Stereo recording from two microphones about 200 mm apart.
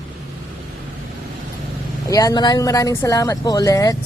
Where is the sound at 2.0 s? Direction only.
20° left (ahead or behind).